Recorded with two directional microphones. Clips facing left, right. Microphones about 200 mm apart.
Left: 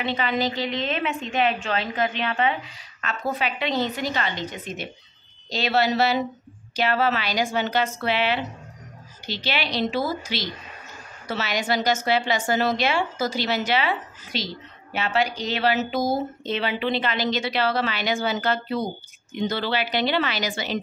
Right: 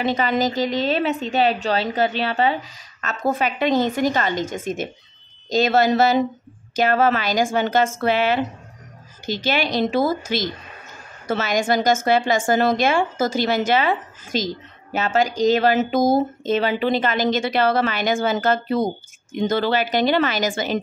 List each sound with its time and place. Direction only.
0.0 s a woman's voice: 45° right (ahead or behind)